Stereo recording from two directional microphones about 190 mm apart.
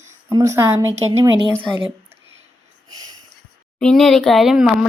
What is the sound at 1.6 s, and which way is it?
Speech, 25° right (ahead or behind).